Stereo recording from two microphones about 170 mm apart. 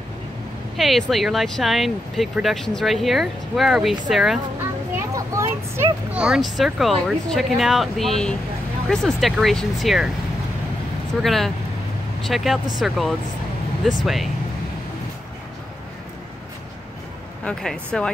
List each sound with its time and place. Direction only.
0.7 s speech: centre (ahead or behind)
5.1 s speech: 20° right (ahead or behind)
6.1 s speech: 5° right (ahead or behind)
11.2 s speech: centre (ahead or behind)
17.5 s speech: 5° left (ahead or behind)